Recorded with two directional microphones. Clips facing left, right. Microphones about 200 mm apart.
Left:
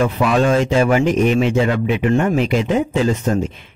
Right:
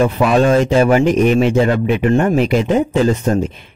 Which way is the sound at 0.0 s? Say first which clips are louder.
Right 3 dB; 35° right (ahead or behind).